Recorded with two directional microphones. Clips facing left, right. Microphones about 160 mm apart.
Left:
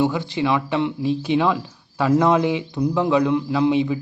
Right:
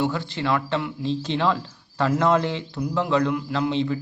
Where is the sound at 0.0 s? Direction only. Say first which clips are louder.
Left 4 dB; 15° left (ahead or behind).